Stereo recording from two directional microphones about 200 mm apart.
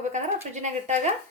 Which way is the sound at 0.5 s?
35° right (ahead or behind).